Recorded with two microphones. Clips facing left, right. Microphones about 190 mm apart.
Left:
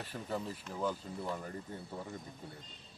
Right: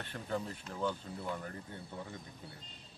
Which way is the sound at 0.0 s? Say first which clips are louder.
Even; 5° left (ahead or behind).